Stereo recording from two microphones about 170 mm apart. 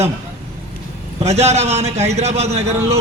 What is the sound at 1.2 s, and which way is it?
A man's voice, 40° right (ahead or behind).